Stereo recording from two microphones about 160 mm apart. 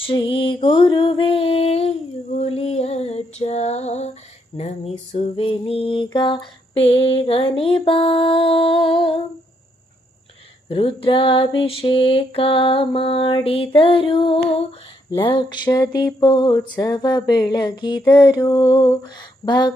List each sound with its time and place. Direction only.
0.0 s mantra: 35° left (ahead or behind)
2.3 s female singing: 40° left (ahead or behind)
10.7 s mantra: 35° left (ahead or behind)
15.2 s a sound: 30° left (ahead or behind)